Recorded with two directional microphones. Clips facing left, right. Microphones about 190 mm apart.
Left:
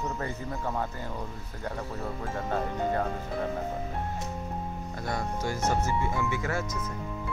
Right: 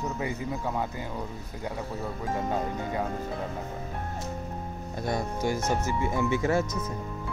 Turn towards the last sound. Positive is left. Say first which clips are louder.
# right 5 dB
turn(degrees=-25)  # may be behind; listen again after turning